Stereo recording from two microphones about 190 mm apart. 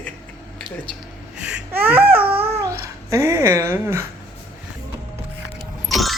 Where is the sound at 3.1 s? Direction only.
15° right (ahead or behind).